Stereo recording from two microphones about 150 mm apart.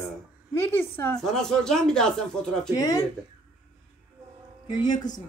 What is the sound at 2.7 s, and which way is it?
Speech, 25° left (ahead or behind).